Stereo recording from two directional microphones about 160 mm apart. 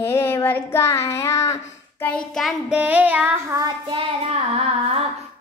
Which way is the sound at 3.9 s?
40° right (ahead or behind).